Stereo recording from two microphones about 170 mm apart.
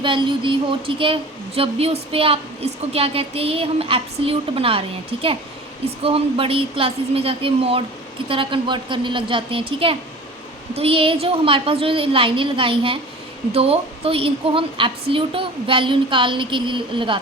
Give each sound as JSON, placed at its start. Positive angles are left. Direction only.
{"t": 0.0, "sound": "a woman's voice", "side_deg": -30}